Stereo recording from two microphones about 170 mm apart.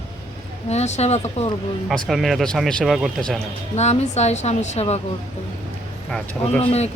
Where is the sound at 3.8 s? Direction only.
40° left (ahead or behind).